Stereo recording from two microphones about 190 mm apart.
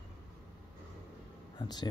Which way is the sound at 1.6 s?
20° left (ahead or behind).